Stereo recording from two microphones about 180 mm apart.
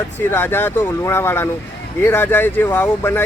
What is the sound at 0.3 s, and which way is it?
Speech, 10° left (ahead or behind).